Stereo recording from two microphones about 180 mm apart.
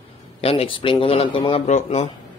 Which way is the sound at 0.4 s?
30° left (ahead or behind).